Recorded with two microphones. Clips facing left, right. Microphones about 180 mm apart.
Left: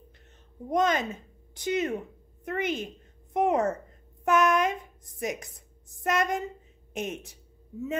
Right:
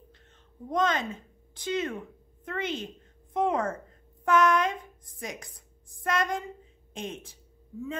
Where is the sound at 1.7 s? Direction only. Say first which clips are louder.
Left 3 dB; 15° left (ahead or behind).